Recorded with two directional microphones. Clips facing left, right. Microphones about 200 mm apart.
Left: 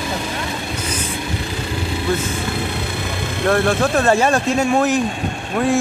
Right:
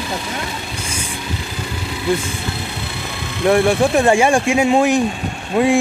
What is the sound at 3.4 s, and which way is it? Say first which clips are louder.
Speech: right 3 dB; 15° right (ahead or behind).